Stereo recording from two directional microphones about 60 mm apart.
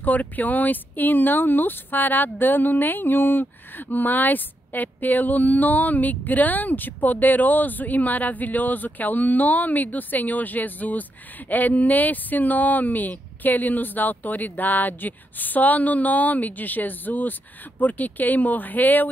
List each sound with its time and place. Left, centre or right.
0.0 s speech: left